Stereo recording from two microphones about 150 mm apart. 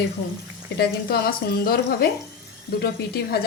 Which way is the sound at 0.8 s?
90° left.